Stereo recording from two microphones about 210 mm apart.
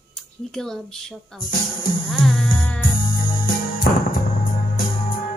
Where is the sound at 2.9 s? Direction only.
45° left (ahead or behind).